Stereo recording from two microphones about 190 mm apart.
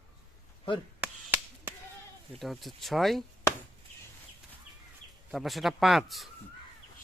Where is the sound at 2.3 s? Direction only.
Centre (ahead or behind).